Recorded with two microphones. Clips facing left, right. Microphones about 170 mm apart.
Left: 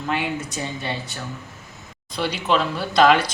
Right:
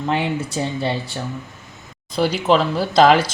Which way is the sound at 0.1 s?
30° right (ahead or behind).